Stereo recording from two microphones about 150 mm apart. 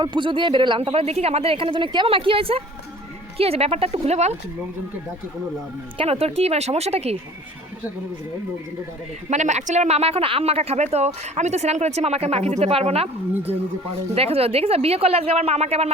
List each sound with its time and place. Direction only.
0.0 s speech: 30° right (ahead or behind); by 4.4 s 45° right (ahead or behind)
6.0 s speech: 40° right (ahead or behind)
9.3 s speech: 50° right (ahead or behind)
14.2 s speech: 40° right (ahead or behind)